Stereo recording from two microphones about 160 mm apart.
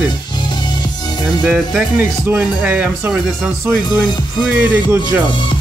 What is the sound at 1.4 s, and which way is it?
Speech, 10° right (ahead or behind).